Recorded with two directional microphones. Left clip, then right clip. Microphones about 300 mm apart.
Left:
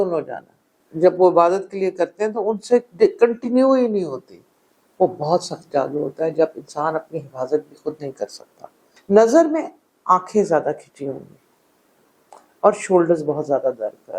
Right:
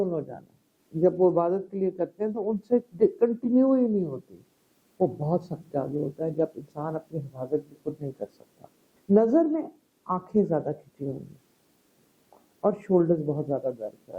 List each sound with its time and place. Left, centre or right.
0.0 s a woman's voice: centre
4.9 s a woman's voice: centre
8.4 s a sound: centre
9.1 s a woman's voice: centre
12.7 s a woman's voice: centre